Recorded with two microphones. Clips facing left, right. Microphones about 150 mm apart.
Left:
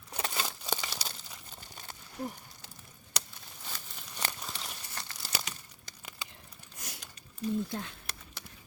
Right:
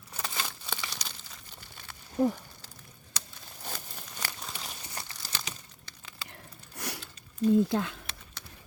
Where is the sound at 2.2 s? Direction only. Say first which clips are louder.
Right 12 dB; 90° right.